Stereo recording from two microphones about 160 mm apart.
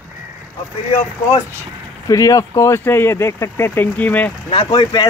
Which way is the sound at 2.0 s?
20° left (ahead or behind).